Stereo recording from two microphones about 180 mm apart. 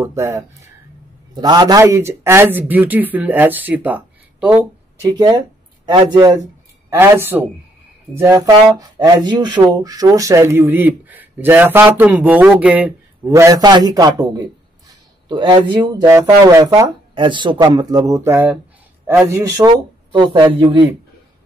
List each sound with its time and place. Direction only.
0.0 s speech: 15° right (ahead or behind)
5.1 s speech: 20° right (ahead or behind)